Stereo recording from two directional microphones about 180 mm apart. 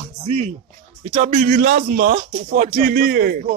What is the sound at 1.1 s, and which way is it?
Speech, 45° right (ahead or behind).